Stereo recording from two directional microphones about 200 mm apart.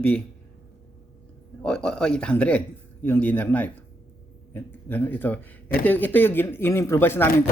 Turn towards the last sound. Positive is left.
turn(degrees=10)  # may be behind; listen again after turning